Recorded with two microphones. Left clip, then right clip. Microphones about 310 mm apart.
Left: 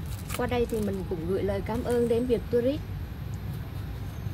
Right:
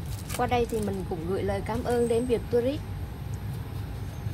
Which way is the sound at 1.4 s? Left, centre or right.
Centre.